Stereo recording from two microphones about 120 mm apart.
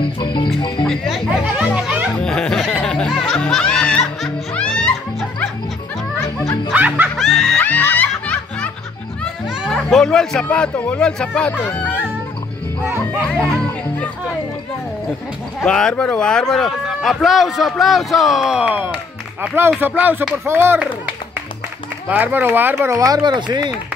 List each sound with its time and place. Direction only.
0.0 s music: 40° left (ahead or behind)
0.6 s speech: 40° left (ahead or behind)
0.8 s music: centre (ahead or behind)
2.1 s music: 5° left (ahead or behind)
6.2 s music: 30° left (ahead or behind)
6.7 s snicker: 15° right (ahead or behind)
7.2 s music: centre (ahead or behind)
7.5 s music: 15° left (ahead or behind)
9.7 s speech: 5° left (ahead or behind)
13.3 s speech: 5° left (ahead or behind)
15.6 s speech: 5° left (ahead or behind); by 20.9 s 20° right (ahead or behind)
22.1 s speech: 15° right (ahead or behind); by 23.7 s 40° right (ahead or behind)